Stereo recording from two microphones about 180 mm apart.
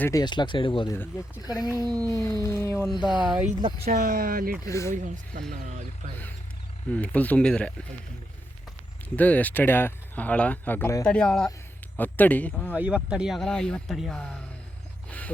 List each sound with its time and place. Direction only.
0.0 s speech: 20° left (ahead or behind)
1.7 s speech: 20° right (ahead or behind)
2.4 s speech: 15° left (ahead or behind)
2.8 s speech: centre (ahead or behind)
3.6 s speech: 25° right (ahead or behind)
3.9 s speech: 50° right (ahead or behind)
4.6 s speech: 15° left (ahead or behind)
5.0 s speech: 45° right (ahead or behind)
6.9 s speech: 10° left (ahead or behind)
9.1 s speech: 10° left (ahead or behind)
12.7 s speech: 5° right (ahead or behind)